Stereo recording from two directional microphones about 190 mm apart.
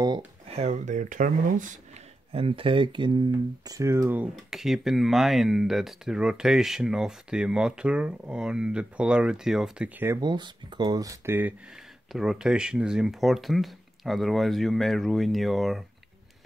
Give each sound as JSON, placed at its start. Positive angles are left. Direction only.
{"t": 0.6, "sound": "speech", "side_deg": -40}
{"t": 2.3, "sound": "speech", "side_deg": -30}